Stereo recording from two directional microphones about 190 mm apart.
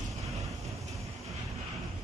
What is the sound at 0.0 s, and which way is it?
Vehicle, 35° right (ahead or behind).